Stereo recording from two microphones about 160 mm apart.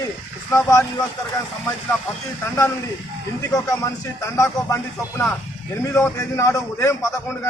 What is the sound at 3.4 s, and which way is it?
A man's voice, 20° left (ahead or behind).